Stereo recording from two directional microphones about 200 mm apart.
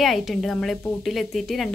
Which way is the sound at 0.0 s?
Centre (ahead or behind).